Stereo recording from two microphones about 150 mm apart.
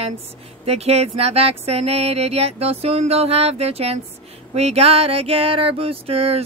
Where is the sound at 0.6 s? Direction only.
45° right (ahead or behind).